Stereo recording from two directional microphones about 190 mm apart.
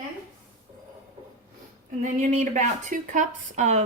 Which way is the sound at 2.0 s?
40° right (ahead or behind).